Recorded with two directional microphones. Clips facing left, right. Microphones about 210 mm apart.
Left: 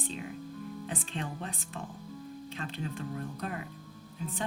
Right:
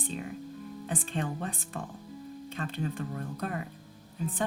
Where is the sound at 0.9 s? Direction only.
50° right (ahead or behind).